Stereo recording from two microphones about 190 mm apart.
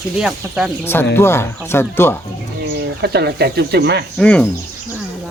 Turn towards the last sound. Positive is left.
turn(degrees=5)  # may be behind; listen again after turning